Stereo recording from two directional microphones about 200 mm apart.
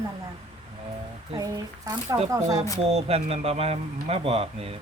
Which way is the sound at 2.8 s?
30° right (ahead or behind).